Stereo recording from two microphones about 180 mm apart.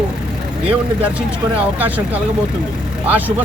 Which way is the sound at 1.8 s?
10° right (ahead or behind).